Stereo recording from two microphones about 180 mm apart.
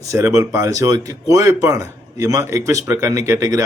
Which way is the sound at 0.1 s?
15° right (ahead or behind).